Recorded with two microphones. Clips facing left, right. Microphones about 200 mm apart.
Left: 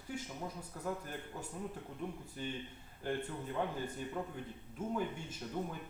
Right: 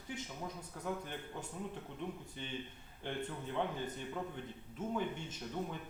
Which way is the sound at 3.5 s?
5° left (ahead or behind).